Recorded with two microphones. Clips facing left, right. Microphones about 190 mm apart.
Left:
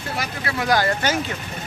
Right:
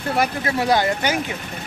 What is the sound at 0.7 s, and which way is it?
Speech, 15° right (ahead or behind).